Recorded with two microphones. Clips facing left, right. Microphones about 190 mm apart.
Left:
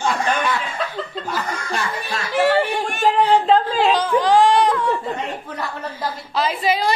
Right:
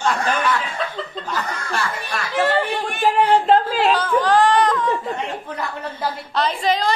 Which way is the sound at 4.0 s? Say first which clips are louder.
Left 1 dB; 15° left (ahead or behind).